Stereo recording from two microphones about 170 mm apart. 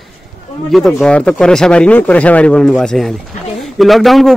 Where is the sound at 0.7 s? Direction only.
5° left (ahead or behind).